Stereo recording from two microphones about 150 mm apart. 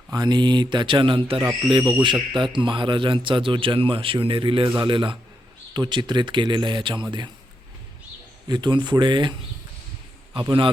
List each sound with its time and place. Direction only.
0.1 s a man's voice: 30° right (ahead or behind)
1.8 s speech: 15° right (ahead or behind)
2.4 s a man's voice: 35° right (ahead or behind)
8.4 s a man's voice: 30° right (ahead or behind)
10.3 s a man's voice: 35° right (ahead or behind)